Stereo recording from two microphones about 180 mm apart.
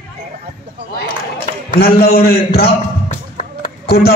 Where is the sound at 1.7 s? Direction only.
60° left (ahead or behind).